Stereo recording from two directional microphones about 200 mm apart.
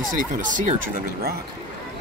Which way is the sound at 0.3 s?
40° right (ahead or behind).